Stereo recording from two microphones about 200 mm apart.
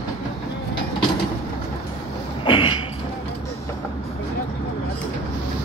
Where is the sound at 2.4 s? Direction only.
25° left (ahead or behind).